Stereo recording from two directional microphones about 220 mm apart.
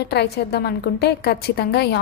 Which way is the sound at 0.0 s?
45° left (ahead or behind).